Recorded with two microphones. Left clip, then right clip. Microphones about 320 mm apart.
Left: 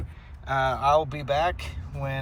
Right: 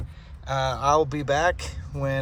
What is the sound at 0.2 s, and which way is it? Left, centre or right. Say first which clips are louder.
Speech: left 1 dB; centre.